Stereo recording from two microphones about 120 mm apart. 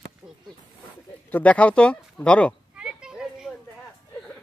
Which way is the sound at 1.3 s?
10° left (ahead or behind).